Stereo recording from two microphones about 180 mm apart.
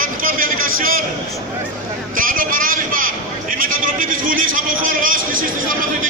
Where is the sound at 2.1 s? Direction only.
50° right (ahead or behind).